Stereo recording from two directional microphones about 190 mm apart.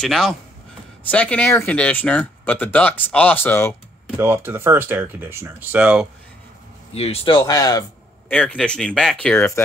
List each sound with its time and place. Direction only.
0.0 s speech: centre (ahead or behind)
4.2 s speech: 10° right (ahead or behind)
6.9 s speech: 30° left (ahead or behind)
8.3 s speech: 5° left (ahead or behind)